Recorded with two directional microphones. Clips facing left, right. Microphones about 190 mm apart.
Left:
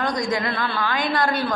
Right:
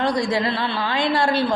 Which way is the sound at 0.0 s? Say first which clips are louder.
Right 3 dB; 30° right (ahead or behind).